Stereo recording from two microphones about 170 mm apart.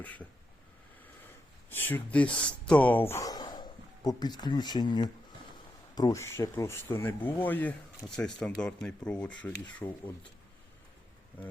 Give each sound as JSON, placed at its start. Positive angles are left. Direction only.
{"t": 0.0, "sound": "speech", "side_deg": 10}
{"t": 1.7, "sound": "speech", "side_deg": 10}
{"t": 3.1, "sound": "speech", "side_deg": 20}